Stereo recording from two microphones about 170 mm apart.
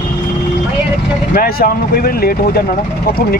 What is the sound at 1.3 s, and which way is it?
Speech, 60° left (ahead or behind).